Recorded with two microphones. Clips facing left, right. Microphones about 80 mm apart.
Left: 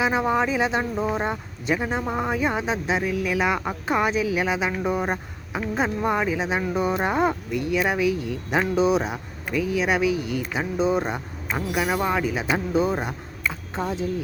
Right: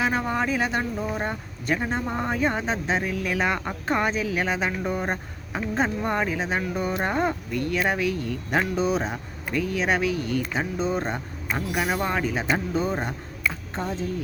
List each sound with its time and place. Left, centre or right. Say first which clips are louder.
0.0 s speech: left 3 dB; centre